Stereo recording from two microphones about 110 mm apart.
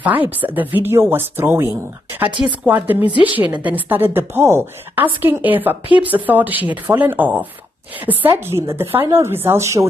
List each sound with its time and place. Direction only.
0.0 s a woman's voice: 15° right (ahead or behind)